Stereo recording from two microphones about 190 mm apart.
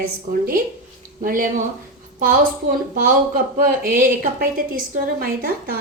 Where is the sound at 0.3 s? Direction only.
45° right (ahead or behind).